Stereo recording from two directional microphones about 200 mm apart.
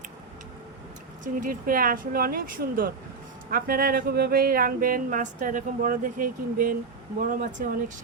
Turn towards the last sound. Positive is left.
turn(degrees=-40)  # may be behind; listen again after turning